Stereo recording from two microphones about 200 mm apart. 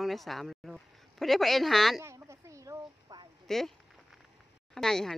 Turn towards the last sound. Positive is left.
turn(degrees=0)  # may be behind; listen again after turning